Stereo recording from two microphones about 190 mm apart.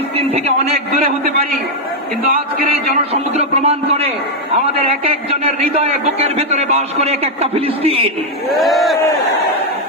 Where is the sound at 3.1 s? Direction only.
35° right (ahead or behind).